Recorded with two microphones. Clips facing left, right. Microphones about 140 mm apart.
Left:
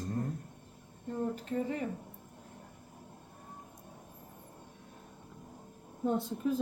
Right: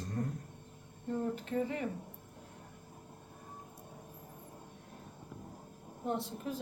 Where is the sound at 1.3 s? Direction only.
35° left (ahead or behind).